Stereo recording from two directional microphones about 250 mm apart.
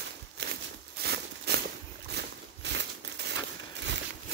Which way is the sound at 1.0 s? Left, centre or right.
Right.